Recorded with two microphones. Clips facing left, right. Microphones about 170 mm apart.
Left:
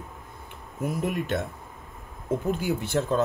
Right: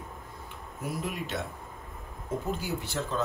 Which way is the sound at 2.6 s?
55° left (ahead or behind).